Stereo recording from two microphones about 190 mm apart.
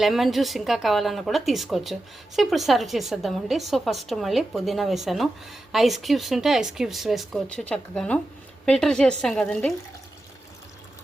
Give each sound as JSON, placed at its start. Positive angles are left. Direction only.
{"t": 0.0, "sound": "speech", "side_deg": 0}